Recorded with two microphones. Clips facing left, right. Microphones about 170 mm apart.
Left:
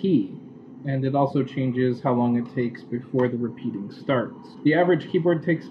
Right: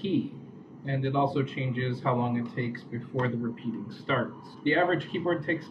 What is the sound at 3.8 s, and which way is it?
Speech, 40° left (ahead or behind).